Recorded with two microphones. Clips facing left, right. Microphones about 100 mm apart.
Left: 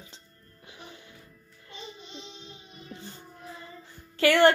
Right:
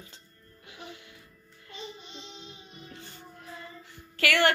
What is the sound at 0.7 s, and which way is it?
Music, 30° left (ahead or behind).